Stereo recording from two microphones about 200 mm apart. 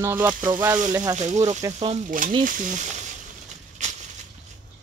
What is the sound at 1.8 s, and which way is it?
Speech, 35° right (ahead or behind).